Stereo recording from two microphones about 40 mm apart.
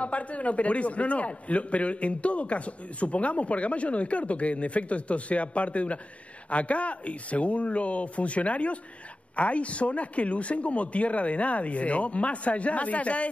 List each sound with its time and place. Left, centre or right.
0.0 s a man's voice: left